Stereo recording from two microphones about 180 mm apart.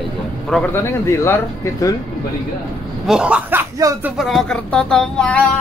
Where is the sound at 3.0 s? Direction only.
5° right (ahead or behind).